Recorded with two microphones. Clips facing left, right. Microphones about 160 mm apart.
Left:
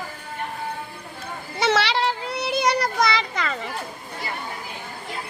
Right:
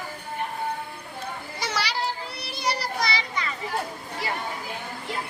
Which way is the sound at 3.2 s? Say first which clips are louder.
Left 4 dB; 75° left (ahead or behind).